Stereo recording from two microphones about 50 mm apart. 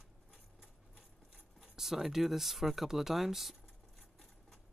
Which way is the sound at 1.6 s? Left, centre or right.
Centre.